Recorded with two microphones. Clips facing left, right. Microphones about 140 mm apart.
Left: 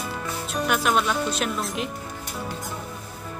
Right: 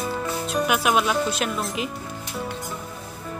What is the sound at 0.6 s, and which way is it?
Speech, 5° right (ahead or behind).